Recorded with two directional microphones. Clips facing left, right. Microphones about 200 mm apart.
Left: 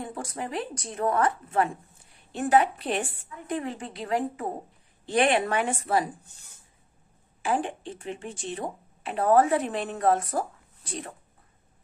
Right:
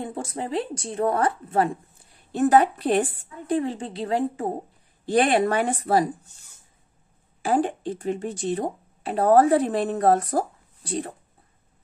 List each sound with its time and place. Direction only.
0.0 s a woman's voice: 25° right (ahead or behind)
7.4 s speech: 35° right (ahead or behind)